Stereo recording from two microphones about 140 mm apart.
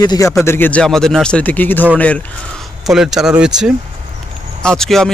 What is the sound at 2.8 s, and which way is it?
Speech, 5° right (ahead or behind).